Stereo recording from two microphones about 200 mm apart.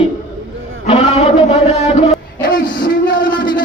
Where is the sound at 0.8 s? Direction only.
30° left (ahead or behind).